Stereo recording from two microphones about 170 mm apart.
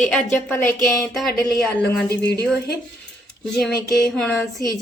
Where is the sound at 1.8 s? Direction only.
75° left (ahead or behind).